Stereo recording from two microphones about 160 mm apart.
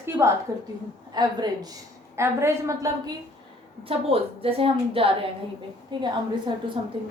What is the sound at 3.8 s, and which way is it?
A woman's voice, 35° right (ahead or behind).